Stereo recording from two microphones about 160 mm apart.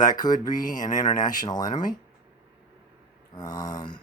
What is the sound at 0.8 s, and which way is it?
Speech, 25° left (ahead or behind).